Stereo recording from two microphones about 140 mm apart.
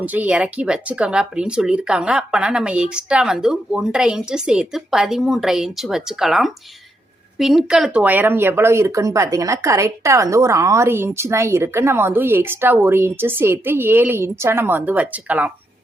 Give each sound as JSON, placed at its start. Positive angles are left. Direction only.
{"t": 0.0, "sound": "speech", "side_deg": -10}